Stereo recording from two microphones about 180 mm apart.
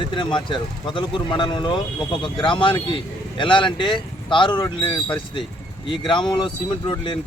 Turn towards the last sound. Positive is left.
turn(degrees=25)  # may be behind; listen again after turning